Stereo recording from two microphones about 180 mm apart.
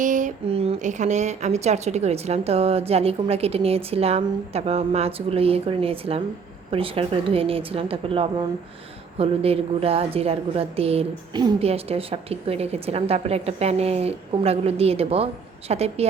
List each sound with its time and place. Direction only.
0.0 s a woman's voice: 45° right (ahead or behind)